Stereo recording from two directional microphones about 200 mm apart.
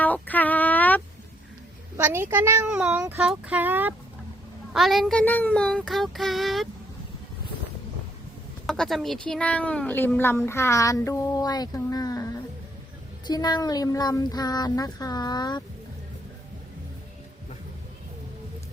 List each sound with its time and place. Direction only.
0.0 s female singing: 10° left (ahead or behind)
2.0 s a child's voice: 10° right (ahead or behind)
4.7 s child singing: centre (ahead or behind)
8.6 s speech: centre (ahead or behind); by 15.6 s 20° left (ahead or behind)